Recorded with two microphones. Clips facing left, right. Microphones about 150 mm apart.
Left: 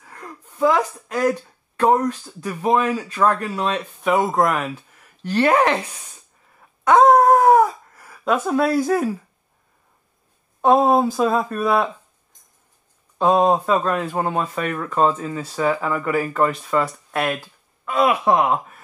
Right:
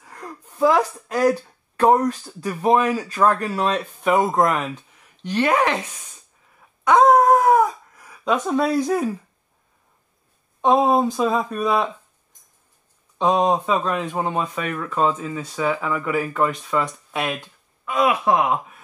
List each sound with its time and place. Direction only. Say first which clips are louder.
0.0 s a sound: right 1 dB; centre (ahead or behind)
0.4 s speech: right 1 dB; 10° right (ahead or behind)
3.4 s speech: right 1 dB; centre (ahead or behind)
5.4 s speech: left 3 dB; 35° left (ahead or behind)
6.9 s dog: left 1 dB; centre (ahead or behind)
7.4 s a sound: left 2 dB; 30° left (ahead or behind)
7.9 s speech: left 1 dB; 5° left (ahead or behind)
10.6 s speech: left 2 dB; 5° left (ahead or behind)
13.2 s speech: left 2 dB; 5° left (ahead or behind)
17.9 s speech: left 1 dB; 30° left (ahead or behind)
18.4 s speech: left 2 dB; centre (ahead or behind)